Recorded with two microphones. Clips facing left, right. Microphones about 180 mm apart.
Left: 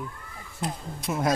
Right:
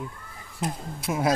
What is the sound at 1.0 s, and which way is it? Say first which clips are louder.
Speech: right 1 dB; 5° right (ahead or behind).